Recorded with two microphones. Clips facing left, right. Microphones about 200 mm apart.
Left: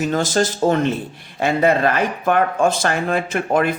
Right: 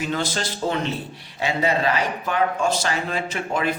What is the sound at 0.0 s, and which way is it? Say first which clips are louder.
Speech: left 7 dB; 45° left (ahead or behind).